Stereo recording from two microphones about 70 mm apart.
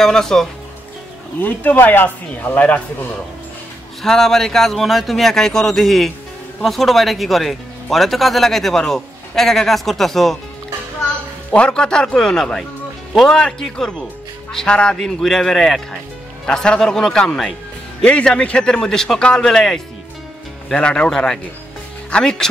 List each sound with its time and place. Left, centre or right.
0.0 s a man's voice: centre
1.4 s speech: left
4.0 s speech: centre
11.5 s a man's voice: centre